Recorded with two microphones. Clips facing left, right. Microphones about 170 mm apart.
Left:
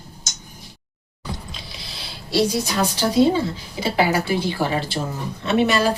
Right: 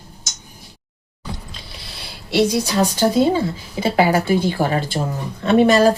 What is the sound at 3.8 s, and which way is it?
A woman's voice, 50° right (ahead or behind).